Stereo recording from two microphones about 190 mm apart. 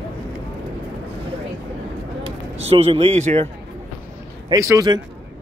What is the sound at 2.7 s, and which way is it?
Speech, 30° right (ahead or behind).